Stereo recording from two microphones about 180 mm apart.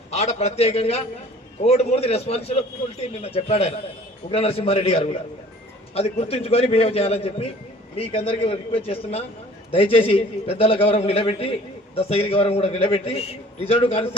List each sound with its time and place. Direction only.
0.1 s a man's voice: 40° left (ahead or behind)